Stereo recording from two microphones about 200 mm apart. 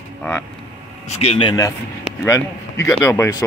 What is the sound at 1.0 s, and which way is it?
Speech, 30° left (ahead or behind).